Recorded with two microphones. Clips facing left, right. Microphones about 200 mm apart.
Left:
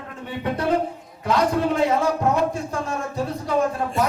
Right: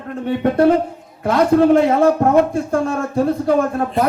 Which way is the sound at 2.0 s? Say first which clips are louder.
Right 8 dB; 55° right (ahead or behind).